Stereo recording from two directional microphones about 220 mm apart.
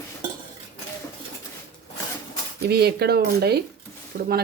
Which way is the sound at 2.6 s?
45° right (ahead or behind).